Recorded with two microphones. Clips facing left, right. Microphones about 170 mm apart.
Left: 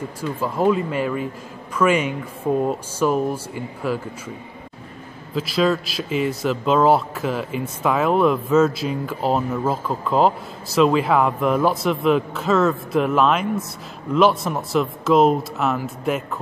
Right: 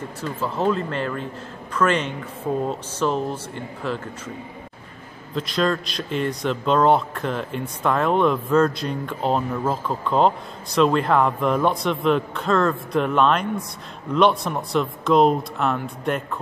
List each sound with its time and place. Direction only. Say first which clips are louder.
0.2 s speech: left 3 dB; 10° left (ahead or behind)
5.3 s speech: left 3 dB; 5° left (ahead or behind)